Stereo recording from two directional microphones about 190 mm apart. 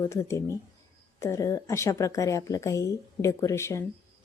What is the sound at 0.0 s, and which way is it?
A woman's voice, 15° left (ahead or behind).